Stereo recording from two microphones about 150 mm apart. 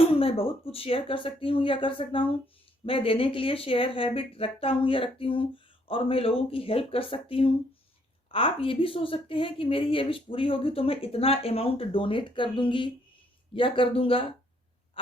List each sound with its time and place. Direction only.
0.0 s a woman's voice: 40° left (ahead or behind)